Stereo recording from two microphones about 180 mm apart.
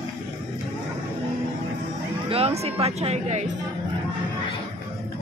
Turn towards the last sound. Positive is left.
turn(degrees=-40)  # may be behind; listen again after turning